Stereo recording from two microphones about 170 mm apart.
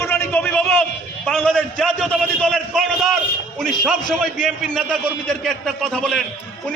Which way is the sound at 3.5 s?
Centre (ahead or behind).